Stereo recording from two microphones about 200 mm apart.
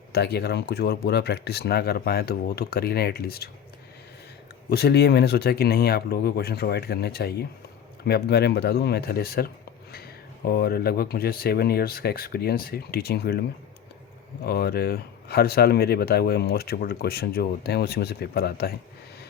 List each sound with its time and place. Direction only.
0.1 s speech: 55° left (ahead or behind)
4.7 s speech: 55° left (ahead or behind)
10.5 s speech: 50° left (ahead or behind)
14.4 s speech: 50° left (ahead or behind)